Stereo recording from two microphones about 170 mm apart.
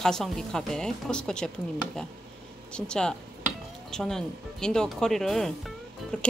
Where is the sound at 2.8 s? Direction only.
5° left (ahead or behind).